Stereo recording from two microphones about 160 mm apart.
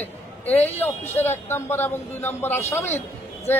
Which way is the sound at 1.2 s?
15° left (ahead or behind).